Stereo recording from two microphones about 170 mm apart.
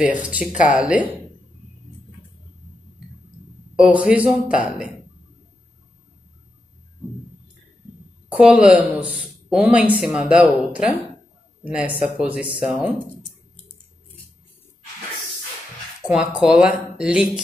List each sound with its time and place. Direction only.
0.2 s speech: 5° right (ahead or behind)
3.7 s a woman's voice: 5° right (ahead or behind)
8.3 s a woman's voice: 5° right (ahead or behind)
16.1 s a woman's voice: 5° right (ahead or behind)